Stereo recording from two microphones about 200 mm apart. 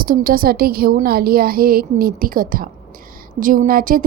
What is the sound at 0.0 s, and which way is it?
A woman's voice, 45° right (ahead or behind).